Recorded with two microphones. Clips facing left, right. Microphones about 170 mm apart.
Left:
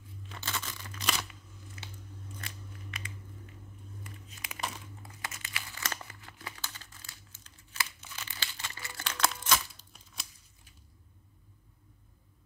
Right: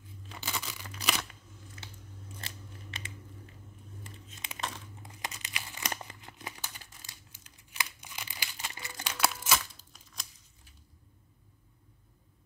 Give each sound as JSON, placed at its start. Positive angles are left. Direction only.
{"t": 0.3, "sound": "a sound", "side_deg": -10}
{"t": 2.4, "sound": "scissors", "side_deg": -25}
{"t": 4.6, "sound": "crumpling", "side_deg": 10}
{"t": 5.0, "sound": "crumpling", "side_deg": -20}